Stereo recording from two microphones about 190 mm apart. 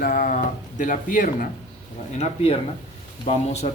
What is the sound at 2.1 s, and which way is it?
Speech, 30° left (ahead or behind).